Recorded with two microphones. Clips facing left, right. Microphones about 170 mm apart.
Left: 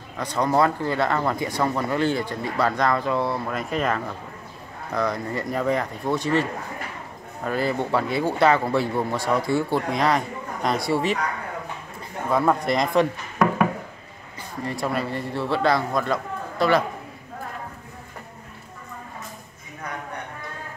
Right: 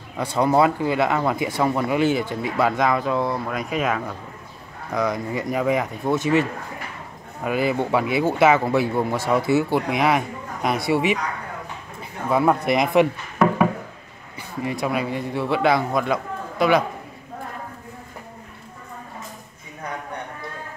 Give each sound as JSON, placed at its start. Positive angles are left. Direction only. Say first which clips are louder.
{"t": 0.2, "sound": "speech", "louder": "right 3 dB", "side_deg": -10}
{"t": 6.1, "sound": "speech", "louder": "right 3 dB", "side_deg": -20}
{"t": 7.4, "sound": "speech", "louder": "right 3 dB", "side_deg": -10}
{"t": 12.3, "sound": "speech", "louder": "right 2 dB", "side_deg": -5}
{"t": 14.6, "sound": "speech", "louder": "right 2 dB", "side_deg": -5}